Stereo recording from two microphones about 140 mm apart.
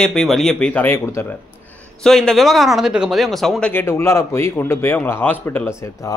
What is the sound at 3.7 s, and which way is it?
A man's voice, 15° left (ahead or behind).